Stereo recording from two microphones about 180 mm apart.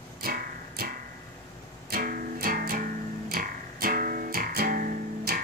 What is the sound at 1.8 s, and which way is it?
Music, 55° right (ahead or behind).